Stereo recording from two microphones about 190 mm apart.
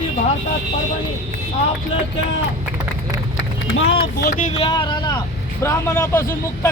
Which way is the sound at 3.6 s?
90° left.